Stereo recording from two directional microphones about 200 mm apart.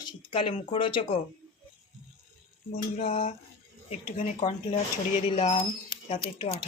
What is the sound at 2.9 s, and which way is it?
Speech, 30° left (ahead or behind).